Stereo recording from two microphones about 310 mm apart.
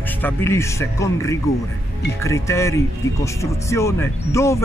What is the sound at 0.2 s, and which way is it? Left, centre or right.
Speech, centre.